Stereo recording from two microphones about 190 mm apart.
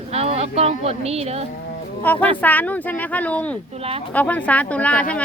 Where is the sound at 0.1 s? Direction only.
35° right (ahead or behind).